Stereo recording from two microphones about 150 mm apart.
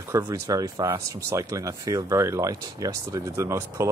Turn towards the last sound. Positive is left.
turn(degrees=-20)  # may be behind; listen again after turning